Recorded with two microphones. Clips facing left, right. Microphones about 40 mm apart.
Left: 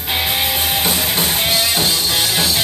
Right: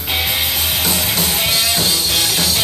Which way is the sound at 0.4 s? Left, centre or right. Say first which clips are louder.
Left 1 dB; centre.